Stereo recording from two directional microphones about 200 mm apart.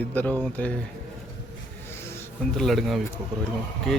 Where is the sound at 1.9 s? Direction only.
10° left (ahead or behind).